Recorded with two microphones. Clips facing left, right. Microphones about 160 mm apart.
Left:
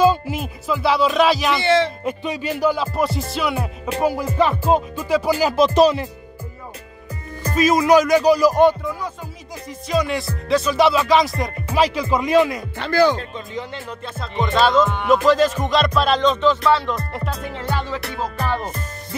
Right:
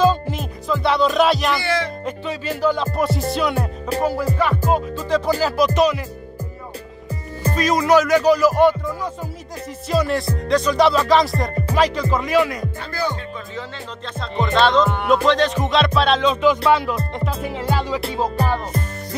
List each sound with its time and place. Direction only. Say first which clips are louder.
0.0 s music: left 1 dB; 10° left (ahead or behind)
1.6 s music: left 5 dB; 25° left (ahead or behind)
2.0 s music: left 1 dB; 15° left (ahead or behind)
4.0 s music: left 2 dB; 15° left (ahead or behind)
5.1 s music: left 1 dB; 10° left (ahead or behind)
5.8 s speech: left 5 dB; 30° left (ahead or behind)
7.5 s music: left 2 dB; 10° left (ahead or behind)
9.8 s music: right 1 dB; centre (ahead or behind)
11.7 s music: left 1 dB; 10° left (ahead or behind)
12.7 s music: left 8 dB; 80° left
14.2 s music: right 1 dB; centre (ahead or behind); by 18.3 s 20° right (ahead or behind)
18.4 s music: right 2 dB; 35° right (ahead or behind)